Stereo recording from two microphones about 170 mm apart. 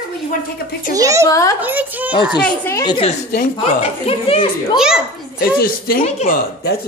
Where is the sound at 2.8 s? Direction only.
30° left (ahead or behind).